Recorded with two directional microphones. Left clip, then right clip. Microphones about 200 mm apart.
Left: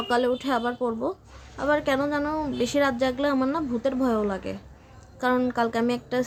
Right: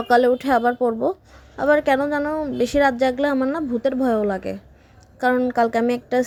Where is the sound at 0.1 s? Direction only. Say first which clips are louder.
Right 8 dB; 30° right (ahead or behind).